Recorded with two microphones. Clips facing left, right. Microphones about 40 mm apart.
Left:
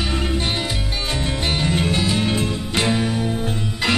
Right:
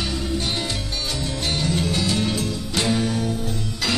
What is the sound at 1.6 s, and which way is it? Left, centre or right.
Music, left.